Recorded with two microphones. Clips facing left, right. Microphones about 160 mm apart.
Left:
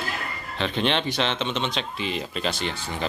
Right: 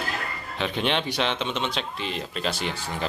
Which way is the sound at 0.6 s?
10° right (ahead or behind).